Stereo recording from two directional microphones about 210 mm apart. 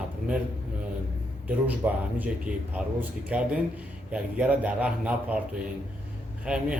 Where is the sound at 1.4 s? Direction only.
5° right (ahead or behind).